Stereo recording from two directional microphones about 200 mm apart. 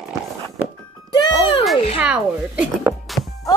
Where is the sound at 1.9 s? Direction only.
5° right (ahead or behind).